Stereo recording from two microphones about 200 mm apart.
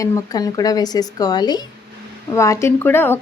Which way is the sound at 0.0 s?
20° left (ahead or behind).